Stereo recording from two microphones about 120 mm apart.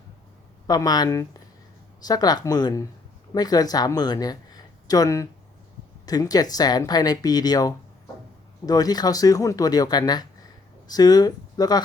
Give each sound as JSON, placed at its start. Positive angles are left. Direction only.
{"t": 0.7, "sound": "speech", "side_deg": 35}